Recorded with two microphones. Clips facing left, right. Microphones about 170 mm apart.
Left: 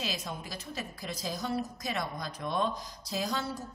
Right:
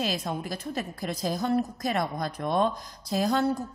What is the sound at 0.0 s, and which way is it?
A woman's voice, 55° right (ahead or behind).